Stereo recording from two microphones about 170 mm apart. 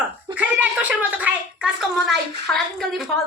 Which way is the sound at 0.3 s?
10° right (ahead or behind).